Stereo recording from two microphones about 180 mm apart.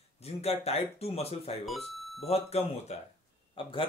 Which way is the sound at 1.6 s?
Centre (ahead or behind).